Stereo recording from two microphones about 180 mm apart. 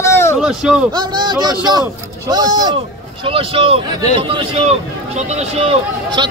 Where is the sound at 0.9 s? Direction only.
25° right (ahead or behind).